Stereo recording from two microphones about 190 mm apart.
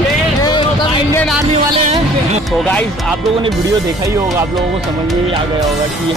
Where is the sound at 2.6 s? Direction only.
5° left (ahead or behind).